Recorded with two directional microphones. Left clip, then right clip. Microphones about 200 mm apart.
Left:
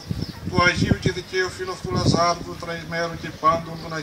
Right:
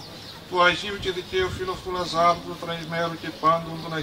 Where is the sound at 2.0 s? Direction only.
40° left (ahead or behind).